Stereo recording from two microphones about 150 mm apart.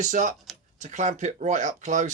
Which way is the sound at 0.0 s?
55° right (ahead or behind).